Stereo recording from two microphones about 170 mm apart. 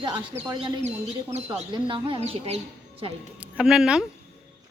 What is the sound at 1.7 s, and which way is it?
Speech, 30° right (ahead or behind).